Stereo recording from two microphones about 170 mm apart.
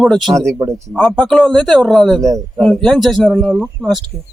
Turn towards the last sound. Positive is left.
turn(degrees=0)  # may be behind; listen again after turning